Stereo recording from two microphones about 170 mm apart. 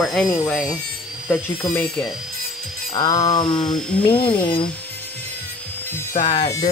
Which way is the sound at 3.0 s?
25° left (ahead or behind).